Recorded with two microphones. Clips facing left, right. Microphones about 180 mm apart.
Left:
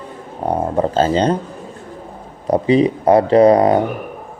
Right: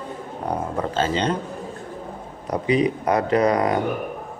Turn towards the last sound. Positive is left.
turn(degrees=30)  # may be behind; listen again after turning